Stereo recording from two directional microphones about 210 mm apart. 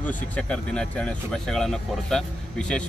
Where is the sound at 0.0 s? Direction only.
5° left (ahead or behind).